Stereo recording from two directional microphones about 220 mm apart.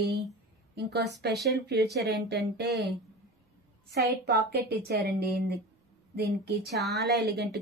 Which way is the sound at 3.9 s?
50° right (ahead or behind).